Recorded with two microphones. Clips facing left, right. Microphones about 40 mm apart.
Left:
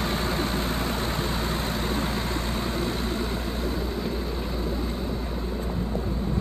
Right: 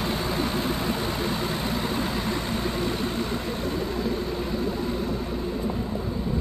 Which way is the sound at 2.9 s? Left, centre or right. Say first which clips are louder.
Right 1 dB; right.